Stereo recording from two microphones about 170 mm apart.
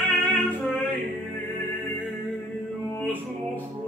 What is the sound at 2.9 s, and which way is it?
Music, 10° left (ahead or behind).